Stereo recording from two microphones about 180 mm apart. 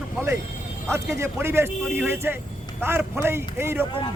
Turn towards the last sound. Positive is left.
turn(degrees=-15)  # may be behind; listen again after turning